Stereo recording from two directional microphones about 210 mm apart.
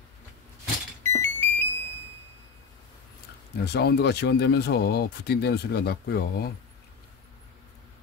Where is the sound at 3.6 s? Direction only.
50° left (ahead or behind).